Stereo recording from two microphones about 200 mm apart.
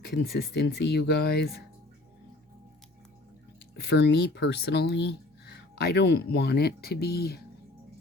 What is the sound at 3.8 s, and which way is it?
Speech, 55° left (ahead or behind).